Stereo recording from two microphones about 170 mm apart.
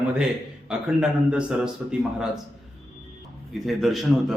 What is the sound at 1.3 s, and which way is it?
A man's voice, 5° right (ahead or behind).